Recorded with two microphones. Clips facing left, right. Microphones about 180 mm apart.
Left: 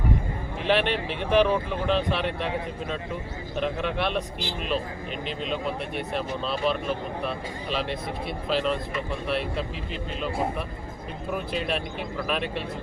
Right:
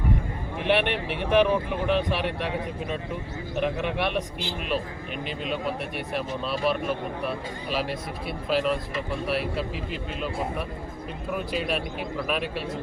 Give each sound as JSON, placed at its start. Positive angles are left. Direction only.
{"t": 0.6, "sound": "speech", "side_deg": -60}
{"t": 1.0, "sound": "speech", "side_deg": -10}
{"t": 3.5, "sound": "speech", "side_deg": -15}
{"t": 6.1, "sound": "speech", "side_deg": -10}
{"t": 11.5, "sound": "speech", "side_deg": -5}